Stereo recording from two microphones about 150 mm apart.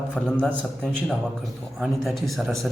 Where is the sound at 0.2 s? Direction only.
5° left (ahead or behind).